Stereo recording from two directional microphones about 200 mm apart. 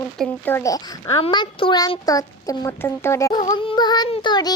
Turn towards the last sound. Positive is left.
turn(degrees=20)  # may be behind; listen again after turning